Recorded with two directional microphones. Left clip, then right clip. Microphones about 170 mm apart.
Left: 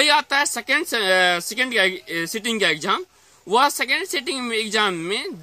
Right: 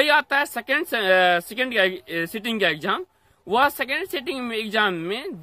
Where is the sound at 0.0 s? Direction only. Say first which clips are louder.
Left 1 dB; 30° right (ahead or behind).